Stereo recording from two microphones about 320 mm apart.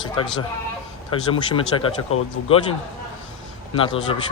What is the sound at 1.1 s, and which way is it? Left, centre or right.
Speech, centre.